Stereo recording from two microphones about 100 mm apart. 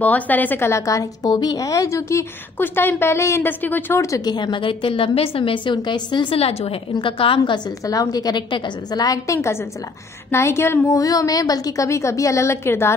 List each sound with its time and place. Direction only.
0.0 s a woman's voice: 15° left (ahead or behind)
4.0 s a woman's voice: 35° left (ahead or behind); by 5.8 s 60° left (ahead or behind)
5.8 s a woman's voice: 45° left (ahead or behind)
6.3 s a woman's voice: 85° left; by 7.7 s 50° left (ahead or behind)
7.8 s a woman's voice: 35° left (ahead or behind)